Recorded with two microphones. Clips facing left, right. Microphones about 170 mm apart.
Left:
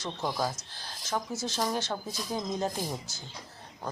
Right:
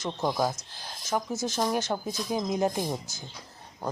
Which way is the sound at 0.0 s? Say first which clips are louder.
Right 4 dB; 15° right (ahead or behind).